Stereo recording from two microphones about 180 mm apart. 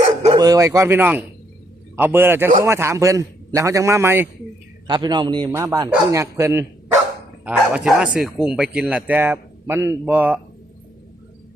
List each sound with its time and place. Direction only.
0.3 s a man's voice: 20° right (ahead or behind)
4.9 s a man's voice: 25° right (ahead or behind)
7.4 s a man's voice: 5° right (ahead or behind)